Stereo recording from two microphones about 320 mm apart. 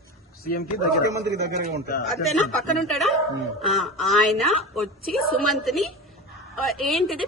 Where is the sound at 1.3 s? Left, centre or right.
Right.